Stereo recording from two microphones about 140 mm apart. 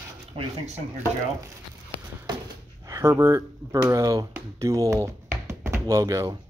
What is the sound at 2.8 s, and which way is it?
Speech, 25° right (ahead or behind).